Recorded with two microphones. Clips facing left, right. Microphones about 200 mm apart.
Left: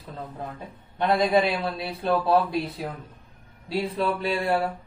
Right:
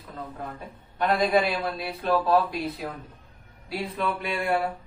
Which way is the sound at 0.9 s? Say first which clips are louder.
Left 1 dB; 25° left (ahead or behind).